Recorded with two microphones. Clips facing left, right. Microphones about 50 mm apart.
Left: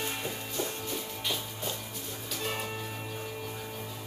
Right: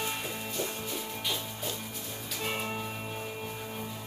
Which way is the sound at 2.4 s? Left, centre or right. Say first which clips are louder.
Right 2 dB; centre.